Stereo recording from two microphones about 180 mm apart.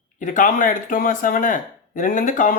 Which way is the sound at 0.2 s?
45° left (ahead or behind).